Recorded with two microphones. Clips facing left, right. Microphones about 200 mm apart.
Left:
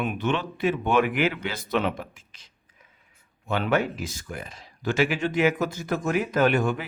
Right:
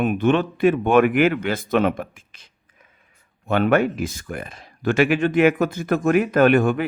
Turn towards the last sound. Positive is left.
turn(degrees=-60)  # may be behind; listen again after turning